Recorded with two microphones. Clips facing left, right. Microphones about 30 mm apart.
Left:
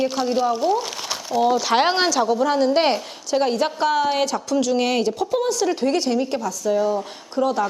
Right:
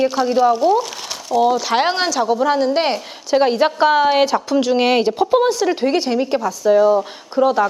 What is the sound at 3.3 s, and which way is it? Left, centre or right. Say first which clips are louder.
A woman's voice: right 5 dB; right.